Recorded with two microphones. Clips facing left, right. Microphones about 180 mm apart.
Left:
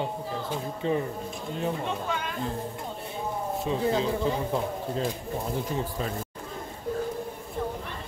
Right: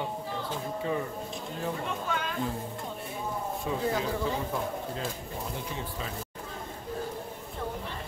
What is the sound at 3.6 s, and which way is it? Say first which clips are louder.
Speech: left 4 dB; 25° left (ahead or behind).